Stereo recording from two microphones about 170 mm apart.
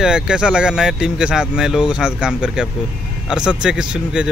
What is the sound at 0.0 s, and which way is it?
Speech, 5° right (ahead or behind).